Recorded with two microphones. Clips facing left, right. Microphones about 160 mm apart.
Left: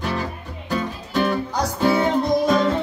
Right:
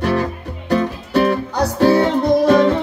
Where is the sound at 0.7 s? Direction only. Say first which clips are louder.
Right 7 dB; 65° right (ahead or behind).